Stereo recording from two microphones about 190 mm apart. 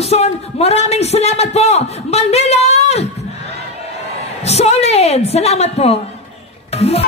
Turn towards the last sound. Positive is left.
turn(degrees=35)  # may be behind; listen again after turning